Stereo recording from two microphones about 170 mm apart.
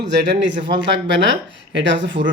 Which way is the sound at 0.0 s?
90° right.